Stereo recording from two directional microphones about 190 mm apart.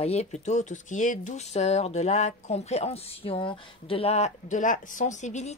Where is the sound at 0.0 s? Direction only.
35° left (ahead or behind).